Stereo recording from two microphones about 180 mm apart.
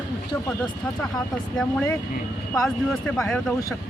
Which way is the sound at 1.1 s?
5° left (ahead or behind).